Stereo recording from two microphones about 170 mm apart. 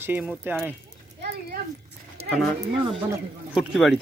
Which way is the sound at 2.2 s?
40° right (ahead or behind).